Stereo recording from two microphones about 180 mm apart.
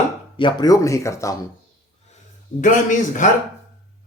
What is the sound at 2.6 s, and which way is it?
Speech, 45° left (ahead or behind).